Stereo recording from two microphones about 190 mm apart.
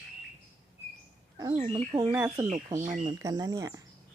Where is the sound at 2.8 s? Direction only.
35° right (ahead or behind).